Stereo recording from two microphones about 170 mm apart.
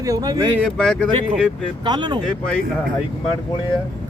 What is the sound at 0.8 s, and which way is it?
Speech, 5° left (ahead or behind).